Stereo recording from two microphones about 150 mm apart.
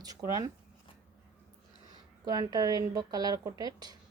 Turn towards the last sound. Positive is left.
turn(degrees=-25)  # may be behind; listen again after turning